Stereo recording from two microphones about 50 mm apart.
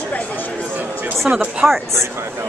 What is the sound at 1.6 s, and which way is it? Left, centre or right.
Speech, right.